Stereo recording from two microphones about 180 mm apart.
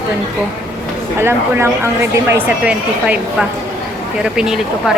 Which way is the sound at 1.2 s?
15° right (ahead or behind).